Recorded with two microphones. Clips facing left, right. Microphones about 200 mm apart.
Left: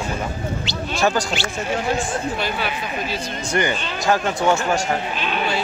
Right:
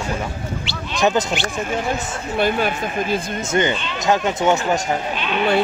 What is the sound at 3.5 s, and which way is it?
Speech, 20° right (ahead or behind).